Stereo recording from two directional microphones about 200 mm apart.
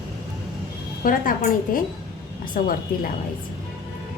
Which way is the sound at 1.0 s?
45° left (ahead or behind).